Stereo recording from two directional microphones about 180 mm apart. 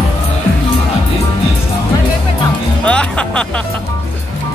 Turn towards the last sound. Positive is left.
turn(degrees=5)  # may be behind; listen again after turning